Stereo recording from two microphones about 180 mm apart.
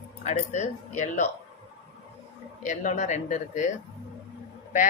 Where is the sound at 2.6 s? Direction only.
45° left (ahead or behind).